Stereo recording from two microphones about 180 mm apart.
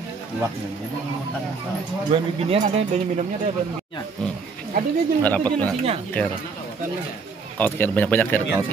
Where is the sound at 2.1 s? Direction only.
30° right (ahead or behind).